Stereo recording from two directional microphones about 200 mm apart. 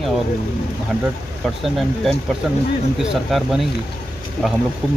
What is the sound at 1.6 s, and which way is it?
Speech, centre (ahead or behind).